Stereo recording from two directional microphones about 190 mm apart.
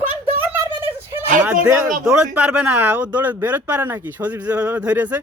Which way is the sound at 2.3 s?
5° right (ahead or behind).